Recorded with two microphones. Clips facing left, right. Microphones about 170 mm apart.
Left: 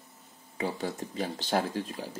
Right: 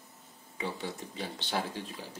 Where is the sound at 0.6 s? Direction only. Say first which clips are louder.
Left 5 dB; 45° left (ahead or behind).